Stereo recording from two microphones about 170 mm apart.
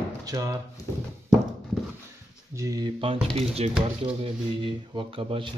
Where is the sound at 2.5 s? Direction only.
20° right (ahead or behind).